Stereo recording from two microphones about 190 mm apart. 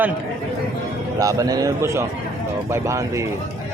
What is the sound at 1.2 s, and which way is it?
A man's voice, 20° right (ahead or behind).